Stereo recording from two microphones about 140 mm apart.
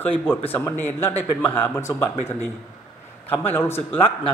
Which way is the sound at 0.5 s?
15° left (ahead or behind).